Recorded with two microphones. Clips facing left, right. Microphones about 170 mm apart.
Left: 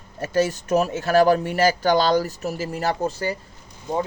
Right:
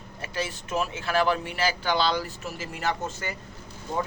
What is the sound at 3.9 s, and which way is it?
Speech, 15° left (ahead or behind).